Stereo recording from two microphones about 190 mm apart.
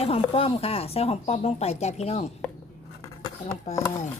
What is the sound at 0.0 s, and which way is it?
Speech, 30° left (ahead or behind).